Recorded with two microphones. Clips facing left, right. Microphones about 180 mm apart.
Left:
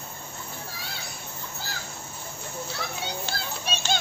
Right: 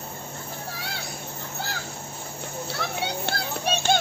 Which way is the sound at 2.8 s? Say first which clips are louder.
Right 6 dB; 65° right (ahead or behind).